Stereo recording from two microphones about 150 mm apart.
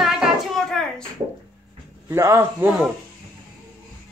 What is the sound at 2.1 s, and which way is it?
Speech, 20° right (ahead or behind).